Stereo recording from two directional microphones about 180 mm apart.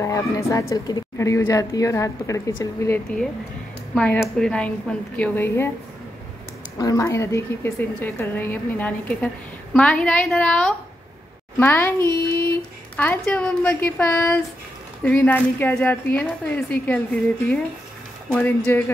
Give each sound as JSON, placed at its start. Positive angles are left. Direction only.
{"t": 0.0, "sound": "a woman's voice", "side_deg": 15}
{"t": 6.8, "sound": "a woman's voice", "side_deg": 20}